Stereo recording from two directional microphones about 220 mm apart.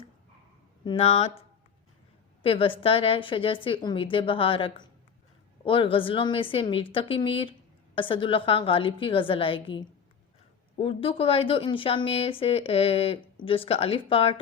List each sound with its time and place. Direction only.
0.9 s speech: 30° left (ahead or behind)